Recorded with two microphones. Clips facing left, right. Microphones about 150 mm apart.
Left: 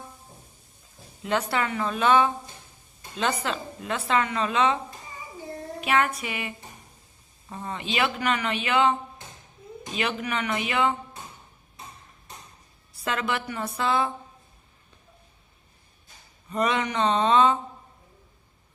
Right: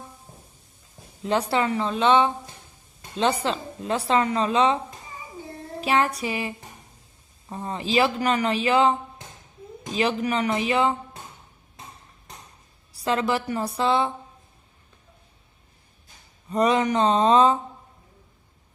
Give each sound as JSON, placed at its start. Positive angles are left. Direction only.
{"t": 1.2, "sound": "a woman's voice", "side_deg": -30}
{"t": 5.8, "sound": "a woman's voice", "side_deg": -30}
{"t": 7.5, "sound": "a woman's voice", "side_deg": -30}
{"t": 13.1, "sound": "a woman's voice", "side_deg": -35}
{"t": 16.5, "sound": "a woman's voice", "side_deg": -35}